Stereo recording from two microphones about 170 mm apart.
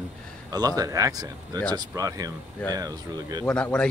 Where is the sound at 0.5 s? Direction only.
20° right (ahead or behind).